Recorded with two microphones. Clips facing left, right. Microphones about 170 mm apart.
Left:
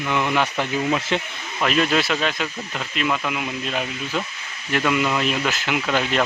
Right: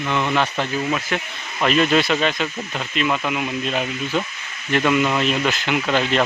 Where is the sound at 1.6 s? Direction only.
Centre (ahead or behind).